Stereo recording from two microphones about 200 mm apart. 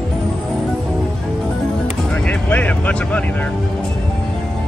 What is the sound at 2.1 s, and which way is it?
Music, 5° left (ahead or behind).